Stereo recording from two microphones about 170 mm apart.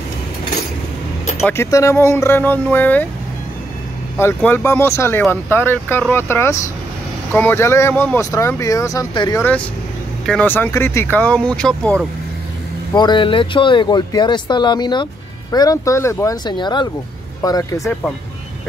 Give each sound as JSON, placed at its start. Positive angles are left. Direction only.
{"t": 1.5, "sound": "speech", "side_deg": 15}
{"t": 4.2, "sound": "speech", "side_deg": 10}
{"t": 10.2, "sound": "speech", "side_deg": 5}
{"t": 12.9, "sound": "speech", "side_deg": 25}